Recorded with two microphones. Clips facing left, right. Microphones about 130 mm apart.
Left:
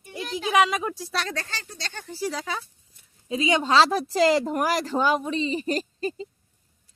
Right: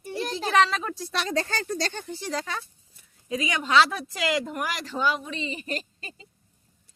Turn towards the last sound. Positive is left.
turn(degrees=35)  # may be behind; listen again after turning